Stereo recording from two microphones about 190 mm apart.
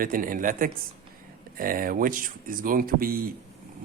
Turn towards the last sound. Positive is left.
turn(degrees=-50)  # may be behind; listen again after turning